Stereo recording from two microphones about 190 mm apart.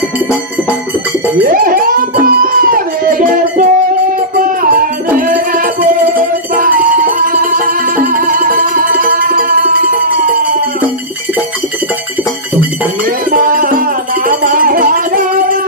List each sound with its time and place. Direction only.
1.4 s a sound: 45° right (ahead or behind)
2.4 s music: 45° right (ahead or behind)
5.1 s music: 45° right (ahead or behind)
13.3 s music: 45° right (ahead or behind)